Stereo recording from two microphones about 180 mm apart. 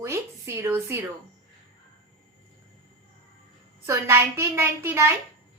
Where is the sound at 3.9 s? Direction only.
15° right (ahead or behind).